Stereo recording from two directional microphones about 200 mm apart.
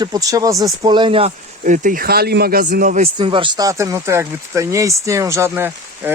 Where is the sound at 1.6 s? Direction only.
40° right (ahead or behind).